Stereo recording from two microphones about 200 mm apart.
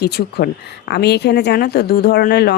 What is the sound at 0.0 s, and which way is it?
A woman's voice, 55° left (ahead or behind).